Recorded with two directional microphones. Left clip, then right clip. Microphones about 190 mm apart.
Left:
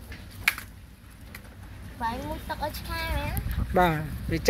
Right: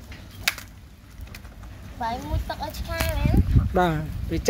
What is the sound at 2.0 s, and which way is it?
Speech, 55° right (ahead or behind).